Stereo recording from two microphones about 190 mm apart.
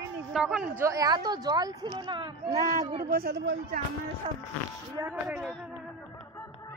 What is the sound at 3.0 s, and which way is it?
Speech, 50° right (ahead or behind).